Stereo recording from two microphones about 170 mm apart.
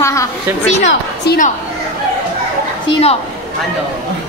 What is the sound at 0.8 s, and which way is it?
Speech, 75° left (ahead or behind).